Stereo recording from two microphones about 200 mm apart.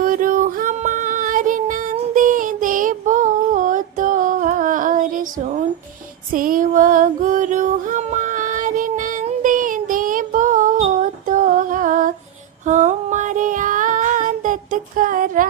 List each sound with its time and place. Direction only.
0.0 s music: 45° right (ahead or behind)
12.6 s female singing: 40° right (ahead or behind)